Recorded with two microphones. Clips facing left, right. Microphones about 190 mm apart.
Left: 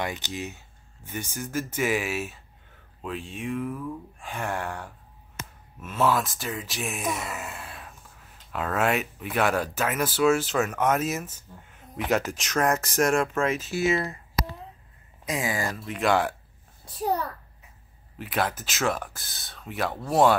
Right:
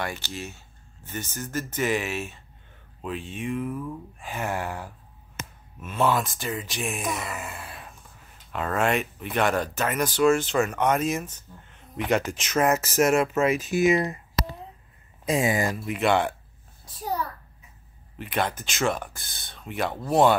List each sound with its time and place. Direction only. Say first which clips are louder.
0.0 s speech: left 1 dB; 15° left (ahead or behind); by 14.1 s 15° right (ahead or behind)
15.2 s speech: right 5 dB; 25° right (ahead or behind)
16.0 s speech: right 1 dB; centre (ahead or behind)
18.1 s speech: even; centre (ahead or behind)